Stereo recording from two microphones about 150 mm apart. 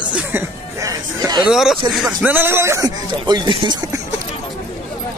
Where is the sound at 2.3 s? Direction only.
15° right (ahead or behind); by 3.8 s 30° right (ahead or behind).